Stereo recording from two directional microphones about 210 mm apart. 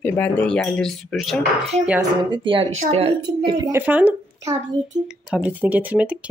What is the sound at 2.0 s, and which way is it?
Speech, 25° right (ahead or behind).